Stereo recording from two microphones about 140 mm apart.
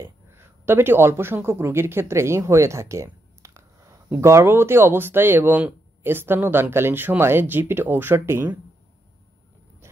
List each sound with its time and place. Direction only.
0.0 s speech: 20° right (ahead or behind)